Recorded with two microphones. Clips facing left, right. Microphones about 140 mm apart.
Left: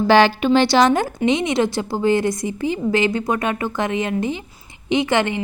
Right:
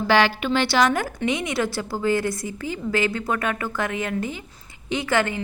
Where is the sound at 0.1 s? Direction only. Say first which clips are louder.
Left 5 dB; 25° left (ahead or behind).